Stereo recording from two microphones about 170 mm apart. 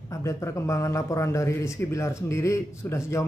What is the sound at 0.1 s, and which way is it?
A man's voice, 20° left (ahead or behind).